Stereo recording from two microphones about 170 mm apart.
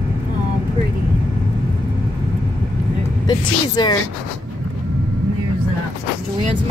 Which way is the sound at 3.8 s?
25° left (ahead or behind).